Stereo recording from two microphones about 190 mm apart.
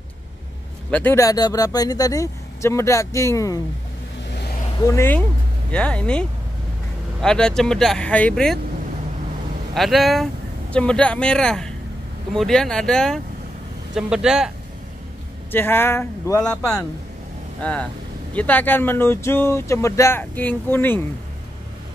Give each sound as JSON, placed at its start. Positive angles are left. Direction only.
{"t": 0.8, "sound": "speech", "side_deg": 10}
{"t": 4.8, "sound": "speech", "side_deg": 15}
{"t": 9.8, "sound": "speech", "side_deg": 0}
{"t": 15.5, "sound": "speech", "side_deg": 10}
{"t": 18.3, "sound": "speech", "side_deg": 10}